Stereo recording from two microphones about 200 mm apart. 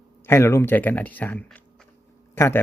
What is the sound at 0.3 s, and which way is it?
Speech, 15° left (ahead or behind).